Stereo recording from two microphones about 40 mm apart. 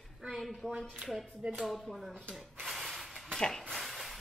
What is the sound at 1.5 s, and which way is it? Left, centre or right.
Speech, centre.